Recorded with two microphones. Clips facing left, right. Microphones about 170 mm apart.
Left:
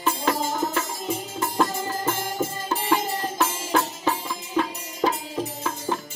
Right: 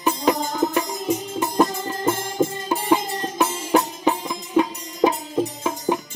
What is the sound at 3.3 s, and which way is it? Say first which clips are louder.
Music: right 5 dB; 15° right (ahead or behind).